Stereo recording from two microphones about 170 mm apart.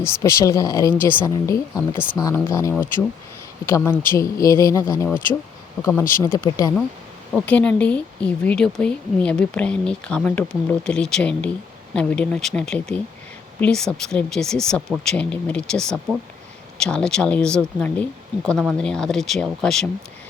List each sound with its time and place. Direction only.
0.0 s speech: 15° left (ahead or behind)
7.3 s speech: 10° left (ahead or behind)